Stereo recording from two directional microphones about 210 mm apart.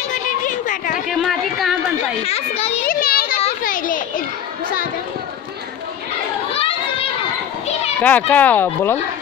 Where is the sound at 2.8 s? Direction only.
45° left (ahead or behind).